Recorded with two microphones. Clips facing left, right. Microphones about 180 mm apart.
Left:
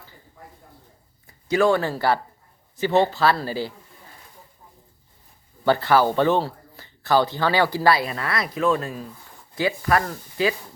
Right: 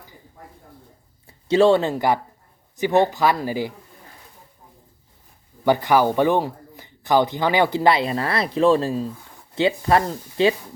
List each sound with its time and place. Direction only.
1.3 s speech: 30° right (ahead or behind)
5.6 s speech: 15° right (ahead or behind)